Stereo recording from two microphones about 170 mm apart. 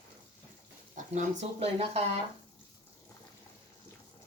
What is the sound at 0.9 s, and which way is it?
Speech, 45° right (ahead or behind).